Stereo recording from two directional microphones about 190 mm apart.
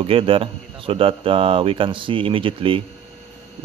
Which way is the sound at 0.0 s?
30° right (ahead or behind).